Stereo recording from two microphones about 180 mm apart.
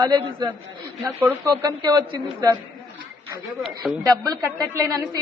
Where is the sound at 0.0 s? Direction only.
25° right (ahead or behind).